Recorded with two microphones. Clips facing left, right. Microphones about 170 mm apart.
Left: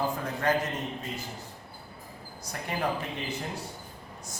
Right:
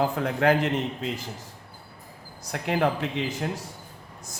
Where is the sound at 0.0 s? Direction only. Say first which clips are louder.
Right 6 dB; 70° right (ahead or behind).